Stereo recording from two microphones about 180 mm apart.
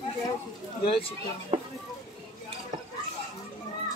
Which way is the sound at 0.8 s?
30° left (ahead or behind).